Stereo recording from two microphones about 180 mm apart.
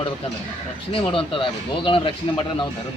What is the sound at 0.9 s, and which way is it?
Speech, 30° left (ahead or behind).